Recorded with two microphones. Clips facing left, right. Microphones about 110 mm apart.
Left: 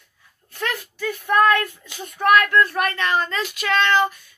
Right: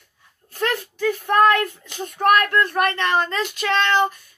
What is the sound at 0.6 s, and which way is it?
Speech, 35° right (ahead or behind).